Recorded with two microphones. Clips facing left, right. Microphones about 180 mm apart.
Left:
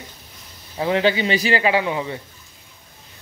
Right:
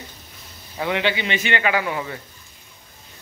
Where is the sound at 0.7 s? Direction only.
35° left (ahead or behind).